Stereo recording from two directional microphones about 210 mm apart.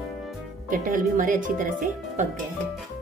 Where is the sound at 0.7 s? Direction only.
40° right (ahead or behind).